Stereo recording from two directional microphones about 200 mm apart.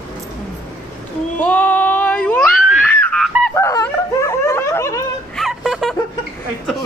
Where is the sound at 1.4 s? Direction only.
10° left (ahead or behind).